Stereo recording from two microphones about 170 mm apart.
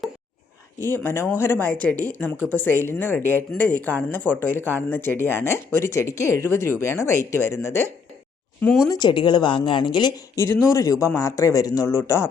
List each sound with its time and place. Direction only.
0.8 s speech: 10° left (ahead or behind)
8.6 s speech: centre (ahead or behind)
8.9 s a woman's voice: 25° left (ahead or behind)